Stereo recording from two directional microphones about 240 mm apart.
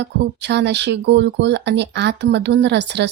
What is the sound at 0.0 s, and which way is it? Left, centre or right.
Speech, right.